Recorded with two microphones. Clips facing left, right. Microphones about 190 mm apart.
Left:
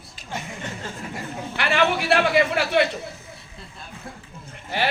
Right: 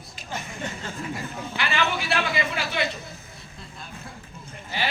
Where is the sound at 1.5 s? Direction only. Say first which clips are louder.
Left 5 dB; 65° left (ahead or behind).